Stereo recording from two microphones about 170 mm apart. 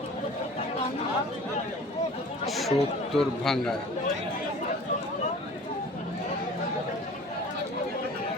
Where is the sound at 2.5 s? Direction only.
Centre (ahead or behind).